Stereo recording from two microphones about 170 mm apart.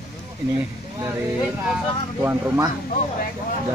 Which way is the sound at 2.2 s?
15° right (ahead or behind).